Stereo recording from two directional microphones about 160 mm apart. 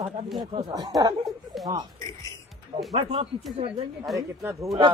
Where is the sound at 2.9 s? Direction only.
35° right (ahead or behind).